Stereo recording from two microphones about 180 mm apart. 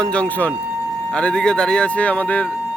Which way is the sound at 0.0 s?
5° left (ahead or behind).